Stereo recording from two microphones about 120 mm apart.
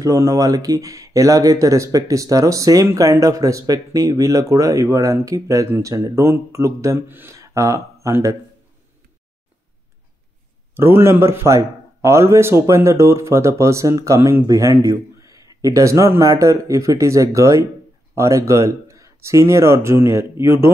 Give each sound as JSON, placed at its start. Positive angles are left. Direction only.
{"t": 0.0, "sound": "speech", "side_deg": -25}
{"t": 10.7, "sound": "speech", "side_deg": -20}